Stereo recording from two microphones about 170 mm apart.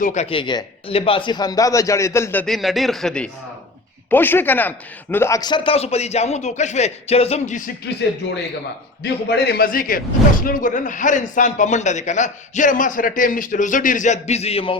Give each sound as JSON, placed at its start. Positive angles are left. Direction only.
{"t": 0.0, "sound": "speech", "side_deg": 45}
{"t": 9.0, "sound": "a man's voice", "side_deg": 75}